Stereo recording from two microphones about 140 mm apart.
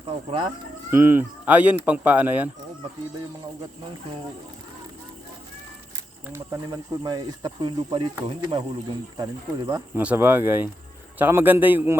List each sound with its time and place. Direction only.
0.0 s speech: 40° right (ahead or behind)
0.9 s a man's voice: 15° right (ahead or behind)
6.2 s speech: 20° right (ahead or behind)
10.0 s a man's voice: 10° right (ahead or behind)